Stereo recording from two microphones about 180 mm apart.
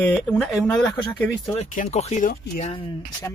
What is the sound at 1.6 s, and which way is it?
Speech, 40° left (ahead or behind).